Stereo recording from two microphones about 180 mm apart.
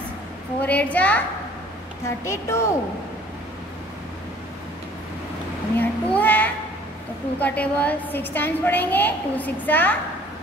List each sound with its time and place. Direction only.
0.6 s a woman's voice: 10° left (ahead or behind)
5.8 s child singing: 10° left (ahead or behind)
7.3 s a woman's voice: 10° left (ahead or behind)